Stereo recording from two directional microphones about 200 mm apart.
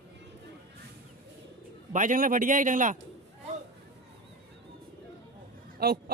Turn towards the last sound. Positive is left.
turn(degrees=-50)  # may be behind; listen again after turning